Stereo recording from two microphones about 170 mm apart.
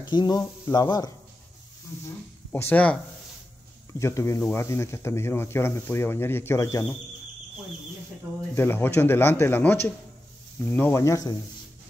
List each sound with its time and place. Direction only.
0.0 s speech: 25° left (ahead or behind); by 3.0 s 10° left (ahead or behind)
4.0 s speech: 15° left (ahead or behind)
8.5 s speech: 15° left (ahead or behind)